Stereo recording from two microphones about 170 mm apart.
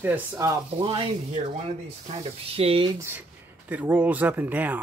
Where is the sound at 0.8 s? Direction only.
30° right (ahead or behind).